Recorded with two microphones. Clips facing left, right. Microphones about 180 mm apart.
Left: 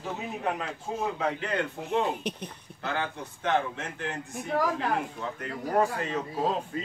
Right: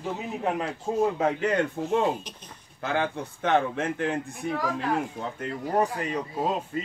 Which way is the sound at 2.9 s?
55° right (ahead or behind).